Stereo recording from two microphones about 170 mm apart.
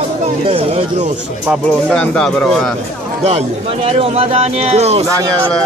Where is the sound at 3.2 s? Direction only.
40° right (ahead or behind).